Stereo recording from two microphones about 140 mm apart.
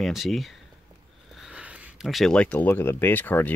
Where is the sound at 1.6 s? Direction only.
Centre (ahead or behind).